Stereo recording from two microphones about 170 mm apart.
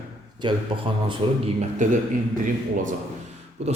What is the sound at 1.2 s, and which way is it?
Speech, 35° right (ahead or behind).